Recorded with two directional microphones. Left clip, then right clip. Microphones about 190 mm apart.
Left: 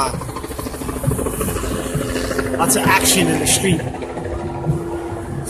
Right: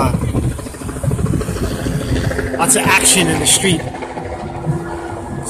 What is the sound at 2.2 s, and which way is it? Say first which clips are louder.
Vehicle: right 1 dB; 10° right (ahead or behind).